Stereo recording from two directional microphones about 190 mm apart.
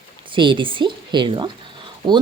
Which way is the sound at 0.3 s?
25° right (ahead or behind).